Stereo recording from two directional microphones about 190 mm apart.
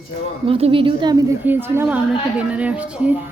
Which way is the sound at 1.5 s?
10° right (ahead or behind).